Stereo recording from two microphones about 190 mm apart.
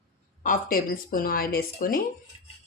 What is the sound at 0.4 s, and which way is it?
Speech, 45° left (ahead or behind).